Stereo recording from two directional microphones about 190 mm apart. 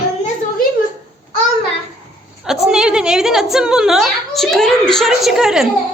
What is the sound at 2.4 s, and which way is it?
A woman's voice, 5° right (ahead or behind).